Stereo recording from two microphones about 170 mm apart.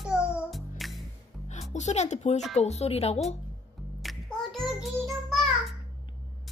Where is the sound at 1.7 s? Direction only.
40° left (ahead or behind).